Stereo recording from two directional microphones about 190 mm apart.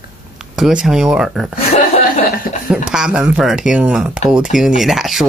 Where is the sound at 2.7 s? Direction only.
5° right (ahead or behind).